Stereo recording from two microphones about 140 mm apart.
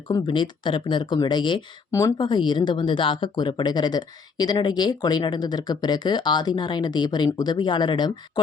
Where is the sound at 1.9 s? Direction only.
25° left (ahead or behind).